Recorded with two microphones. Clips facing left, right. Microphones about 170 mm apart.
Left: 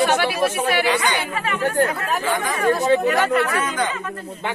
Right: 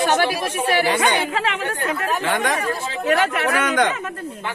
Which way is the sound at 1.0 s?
80° right.